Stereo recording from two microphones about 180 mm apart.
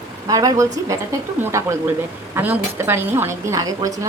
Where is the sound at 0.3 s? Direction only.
20° right (ahead or behind).